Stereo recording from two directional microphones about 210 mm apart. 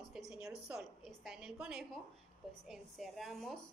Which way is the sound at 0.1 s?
5° right (ahead or behind).